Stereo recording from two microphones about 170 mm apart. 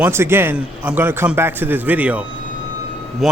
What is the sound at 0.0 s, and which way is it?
A man's voice, 15° right (ahead or behind).